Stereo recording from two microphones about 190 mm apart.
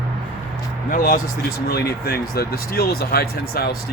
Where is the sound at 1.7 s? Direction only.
55° left (ahead or behind).